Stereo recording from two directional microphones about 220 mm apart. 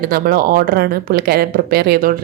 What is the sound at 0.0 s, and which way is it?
A woman's voice, 40° right (ahead or behind).